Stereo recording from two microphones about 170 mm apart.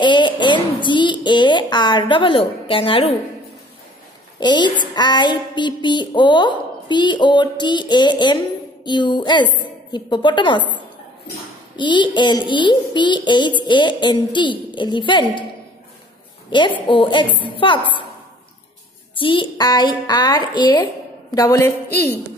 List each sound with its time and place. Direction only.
0.0 s a child's voice: 25° left (ahead or behind)
4.4 s a child's voice: 25° left (ahead or behind)
11.7 s a child's voice: 25° left (ahead or behind)
16.4 s a child's voice: 30° left (ahead or behind)
19.1 s a child's voice: 30° left (ahead or behind); by 22.2 s 10° left (ahead or behind)